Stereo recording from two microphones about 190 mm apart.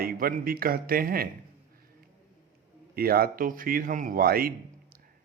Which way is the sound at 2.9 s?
50° right (ahead or behind).